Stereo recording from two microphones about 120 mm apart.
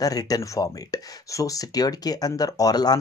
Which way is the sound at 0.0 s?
30° left (ahead or behind).